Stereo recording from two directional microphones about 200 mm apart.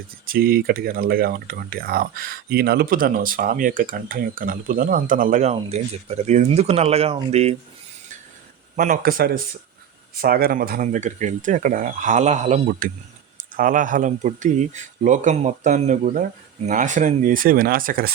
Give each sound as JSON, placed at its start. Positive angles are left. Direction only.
{"t": 0.3, "sound": "speech", "side_deg": -45}
{"t": 8.7, "sound": "speech", "side_deg": -40}